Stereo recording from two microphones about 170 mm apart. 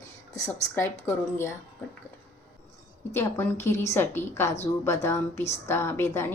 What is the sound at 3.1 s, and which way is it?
A woman's voice, 15° left (ahead or behind).